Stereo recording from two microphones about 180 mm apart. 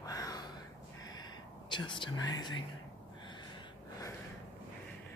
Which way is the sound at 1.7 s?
25° left (ahead or behind).